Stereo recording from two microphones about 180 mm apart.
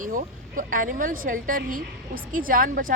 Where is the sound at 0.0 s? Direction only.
50° right (ahead or behind).